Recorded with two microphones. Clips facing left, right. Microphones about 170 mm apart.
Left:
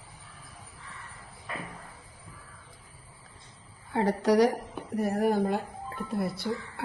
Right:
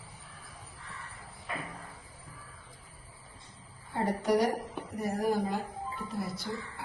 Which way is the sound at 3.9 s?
85° left.